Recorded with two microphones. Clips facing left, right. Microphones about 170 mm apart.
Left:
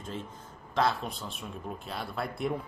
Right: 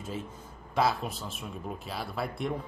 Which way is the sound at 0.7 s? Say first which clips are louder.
Right 1 dB; 5° right (ahead or behind).